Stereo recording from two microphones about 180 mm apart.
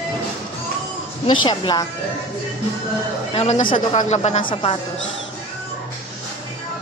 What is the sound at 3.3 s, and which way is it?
A man's voice, 30° left (ahead or behind).